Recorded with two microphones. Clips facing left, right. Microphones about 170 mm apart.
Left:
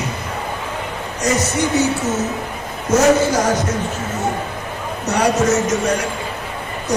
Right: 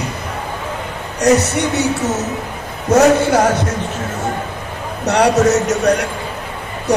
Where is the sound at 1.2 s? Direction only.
65° right (ahead or behind).